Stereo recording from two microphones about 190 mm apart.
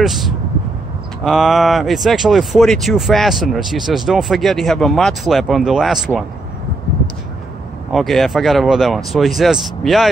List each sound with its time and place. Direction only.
0.0 s speech: centre (ahead or behind)
7.9 s speech: centre (ahead or behind)